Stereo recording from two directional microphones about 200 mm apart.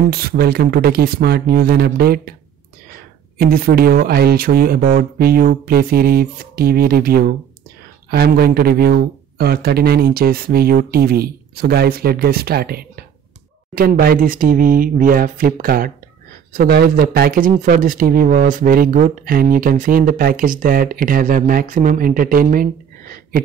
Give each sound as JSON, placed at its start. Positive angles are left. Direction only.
{"t": 0.1, "sound": "speech", "side_deg": -50}
{"t": 3.3, "sound": "speech", "side_deg": -50}